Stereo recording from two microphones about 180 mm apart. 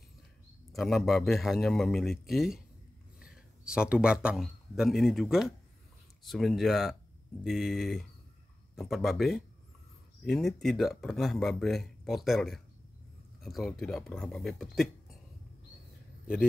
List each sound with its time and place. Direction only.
0.7 s speech: centre (ahead or behind)